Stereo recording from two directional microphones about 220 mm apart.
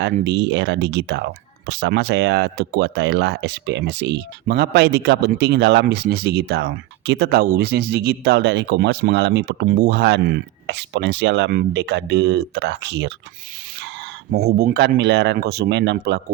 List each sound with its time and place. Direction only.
0.0 s speech: 50° right (ahead or behind)